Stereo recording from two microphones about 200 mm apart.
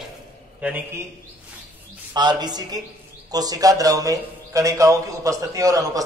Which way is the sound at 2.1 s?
20° right (ahead or behind).